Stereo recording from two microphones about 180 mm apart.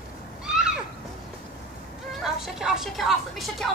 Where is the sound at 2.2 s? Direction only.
5° right (ahead or behind).